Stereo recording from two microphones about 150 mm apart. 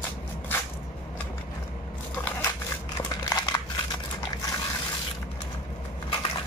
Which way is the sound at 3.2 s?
25° left (ahead or behind).